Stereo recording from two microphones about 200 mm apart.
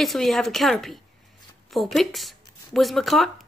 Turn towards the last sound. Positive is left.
turn(degrees=0)  # may be behind; listen again after turning